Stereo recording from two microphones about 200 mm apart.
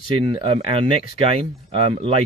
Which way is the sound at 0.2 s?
25° right (ahead or behind).